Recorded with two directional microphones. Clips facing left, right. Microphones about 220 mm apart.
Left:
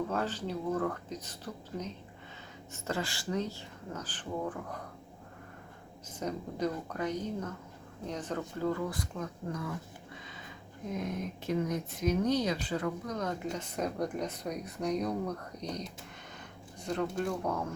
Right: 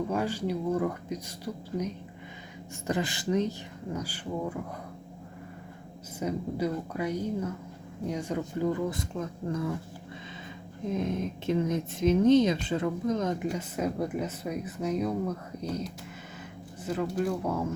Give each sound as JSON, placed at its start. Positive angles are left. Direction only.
{"t": 0.1, "sound": "speech", "side_deg": -10}
{"t": 2.8, "sound": "speech", "side_deg": -20}
{"t": 6.1, "sound": "speech", "side_deg": -10}
{"t": 10.9, "sound": "speech", "side_deg": -25}
{"t": 13.5, "sound": "speech", "side_deg": -5}